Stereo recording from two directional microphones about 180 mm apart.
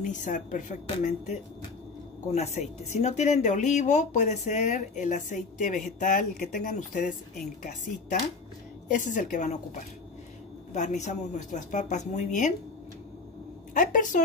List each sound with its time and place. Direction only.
0.0 s speech: 45° left (ahead or behind)
8.8 s speech: 45° left (ahead or behind)
10.7 s a woman's voice: 40° left (ahead or behind)
13.7 s speech: 50° left (ahead or behind)